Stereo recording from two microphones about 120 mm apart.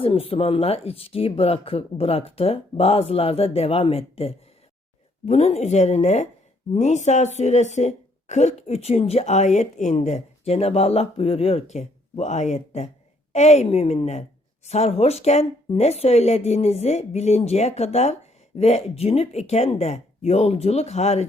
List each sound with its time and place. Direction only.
0.0 s a woman's voice: 50° left (ahead or behind)